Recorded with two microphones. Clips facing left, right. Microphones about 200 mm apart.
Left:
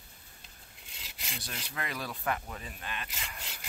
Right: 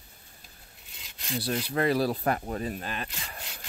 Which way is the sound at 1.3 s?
35° right (ahead or behind).